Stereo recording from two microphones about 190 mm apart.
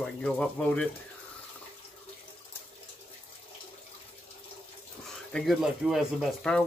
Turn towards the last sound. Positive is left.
turn(degrees=5)  # may be behind; listen again after turning